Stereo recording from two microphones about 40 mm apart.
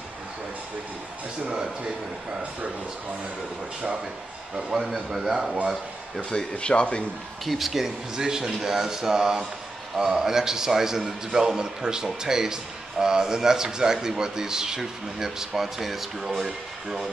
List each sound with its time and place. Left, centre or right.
4.6 s speech: centre
6.5 s speech: left
7.4 s speech: centre